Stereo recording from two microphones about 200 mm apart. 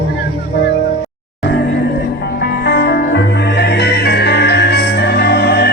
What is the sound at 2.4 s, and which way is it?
Music, 55° left (ahead or behind).